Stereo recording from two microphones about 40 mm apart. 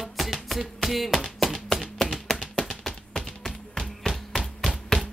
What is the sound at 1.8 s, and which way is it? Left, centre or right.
Music, centre.